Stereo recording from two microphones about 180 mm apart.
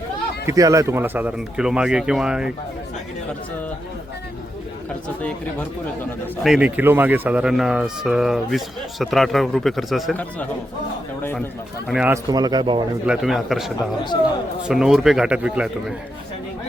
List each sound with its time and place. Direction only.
0.4 s speech: 20° right (ahead or behind)
6.4 s speech: 5° right (ahead or behind); by 11.4 s 10° left (ahead or behind)
11.9 s speech: 5° right (ahead or behind)
12.1 s speech: 20° right (ahead or behind)
13.1 s speech: centre (ahead or behind)
13.7 s a man's voice: 25° left (ahead or behind)
14.7 s speech: 5° right (ahead or behind)